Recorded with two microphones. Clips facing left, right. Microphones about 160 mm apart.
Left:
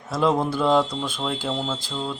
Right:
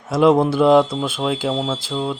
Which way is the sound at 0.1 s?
10° right (ahead or behind).